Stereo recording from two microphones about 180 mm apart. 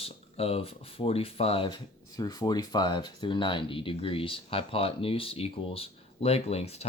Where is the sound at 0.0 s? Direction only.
35° left (ahead or behind).